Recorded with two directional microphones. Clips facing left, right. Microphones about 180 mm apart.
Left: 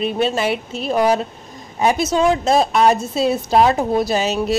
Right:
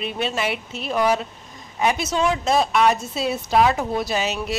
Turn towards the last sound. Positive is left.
turn(degrees=35)  # may be behind; listen again after turning